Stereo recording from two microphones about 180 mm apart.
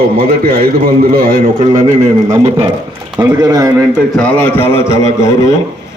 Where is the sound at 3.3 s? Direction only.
20° right (ahead or behind).